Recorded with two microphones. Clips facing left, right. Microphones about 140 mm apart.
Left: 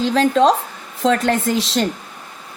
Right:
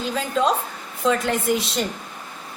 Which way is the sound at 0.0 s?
90° left.